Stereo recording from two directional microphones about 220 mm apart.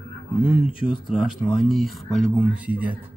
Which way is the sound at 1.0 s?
Centre (ahead or behind).